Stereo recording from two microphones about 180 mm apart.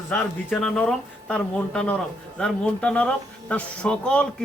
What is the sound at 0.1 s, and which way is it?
Speech, 5° left (ahead or behind).